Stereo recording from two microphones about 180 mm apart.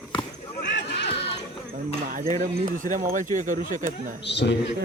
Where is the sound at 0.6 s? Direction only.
75° left (ahead or behind).